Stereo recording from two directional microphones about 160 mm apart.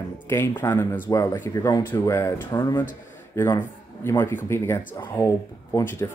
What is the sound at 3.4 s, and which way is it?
A man's voice, 15° left (ahead or behind).